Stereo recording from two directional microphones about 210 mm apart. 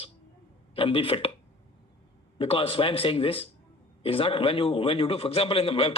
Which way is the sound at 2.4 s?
25° left (ahead or behind).